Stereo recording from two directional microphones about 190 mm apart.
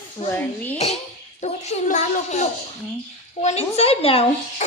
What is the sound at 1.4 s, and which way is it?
A child's voice, 35° left (ahead or behind).